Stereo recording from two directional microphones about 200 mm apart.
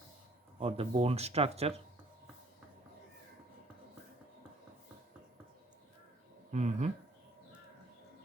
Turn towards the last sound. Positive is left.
turn(degrees=-35)  # may be behind; listen again after turning